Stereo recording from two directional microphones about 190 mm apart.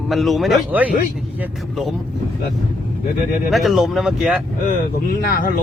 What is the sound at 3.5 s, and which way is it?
Speech, centre (ahead or behind).